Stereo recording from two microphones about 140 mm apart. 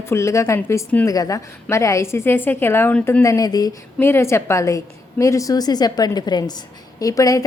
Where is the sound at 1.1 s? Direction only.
25° left (ahead or behind).